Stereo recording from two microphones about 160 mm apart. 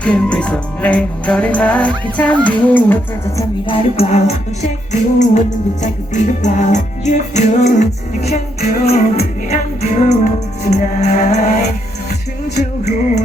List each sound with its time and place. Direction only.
0.0 s music: 5° left (ahead or behind)
3.7 s music: 40° left (ahead or behind)